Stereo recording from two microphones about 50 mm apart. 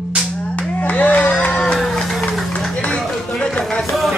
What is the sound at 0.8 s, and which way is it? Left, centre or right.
Music, left.